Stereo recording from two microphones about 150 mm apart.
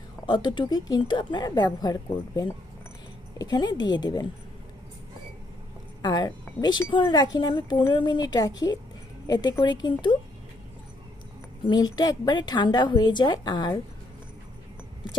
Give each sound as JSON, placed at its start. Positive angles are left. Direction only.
{"t": 0.3, "sound": "speech", "side_deg": 30}
{"t": 6.0, "sound": "speech", "side_deg": 25}
{"t": 11.6, "sound": "speech", "side_deg": 30}